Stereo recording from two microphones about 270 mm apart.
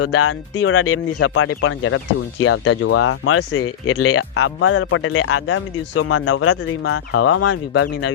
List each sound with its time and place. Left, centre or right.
0.0 s speech: left
7.4 s speech: left